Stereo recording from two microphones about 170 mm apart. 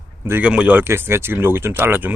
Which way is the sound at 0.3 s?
10° right (ahead or behind).